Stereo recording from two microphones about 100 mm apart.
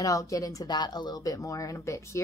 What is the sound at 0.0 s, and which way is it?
Speech, 35° left (ahead or behind).